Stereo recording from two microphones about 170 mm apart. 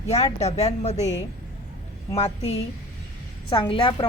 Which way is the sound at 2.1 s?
40° left (ahead or behind).